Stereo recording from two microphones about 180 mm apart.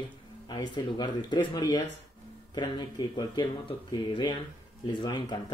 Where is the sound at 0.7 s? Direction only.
25° left (ahead or behind).